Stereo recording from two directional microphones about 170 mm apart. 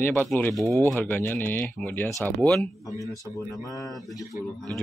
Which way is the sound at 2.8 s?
20° left (ahead or behind).